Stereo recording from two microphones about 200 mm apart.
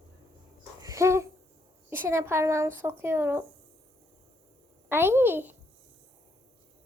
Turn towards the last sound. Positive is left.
turn(degrees=-10)  # may be behind; listen again after turning